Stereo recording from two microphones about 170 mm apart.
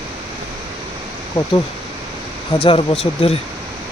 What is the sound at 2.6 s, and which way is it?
Speech, 35° left (ahead or behind).